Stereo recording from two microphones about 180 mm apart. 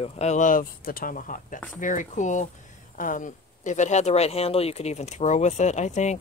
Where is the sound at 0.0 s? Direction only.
40° left (ahead or behind).